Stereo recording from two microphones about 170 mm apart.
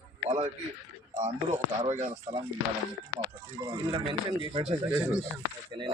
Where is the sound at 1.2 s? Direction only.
45° right (ahead or behind).